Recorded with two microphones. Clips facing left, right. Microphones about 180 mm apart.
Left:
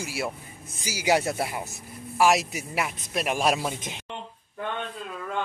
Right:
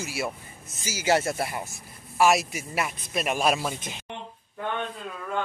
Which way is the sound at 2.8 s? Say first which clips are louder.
Even; centre (ahead or behind).